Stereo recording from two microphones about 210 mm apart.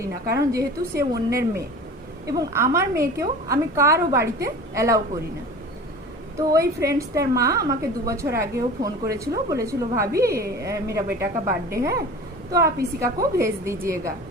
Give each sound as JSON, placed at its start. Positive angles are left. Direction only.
{"t": 0.0, "sound": "a woman's voice", "side_deg": -15}
{"t": 6.3, "sound": "a woman's voice", "side_deg": -15}